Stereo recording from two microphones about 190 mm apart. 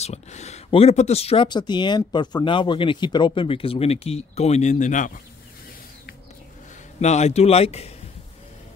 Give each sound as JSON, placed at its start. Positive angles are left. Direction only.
{"t": 0.0, "sound": "speech", "side_deg": 35}
{"t": 7.0, "sound": "a man's voice", "side_deg": 35}